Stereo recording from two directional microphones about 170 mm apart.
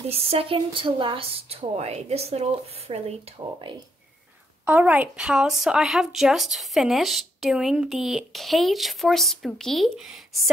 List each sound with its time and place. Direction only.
0.1 s a woman's voice: 35° right (ahead or behind)
4.6 s a woman's voice: 10° right (ahead or behind)